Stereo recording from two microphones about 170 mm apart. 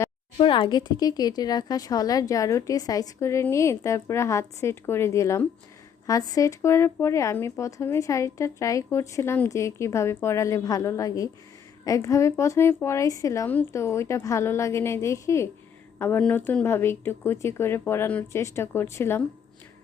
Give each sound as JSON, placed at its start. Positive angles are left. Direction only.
{"t": 0.3, "sound": "speech", "side_deg": 30}